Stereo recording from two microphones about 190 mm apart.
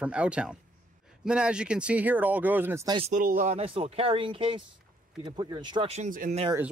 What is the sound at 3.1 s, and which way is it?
Speech, 45° right (ahead or behind).